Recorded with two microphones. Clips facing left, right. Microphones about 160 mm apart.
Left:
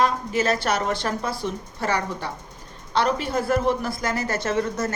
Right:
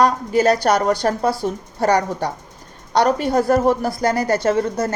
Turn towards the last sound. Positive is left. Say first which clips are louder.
# right 6 dB
turn(degrees=-30)  # may be behind; listen again after turning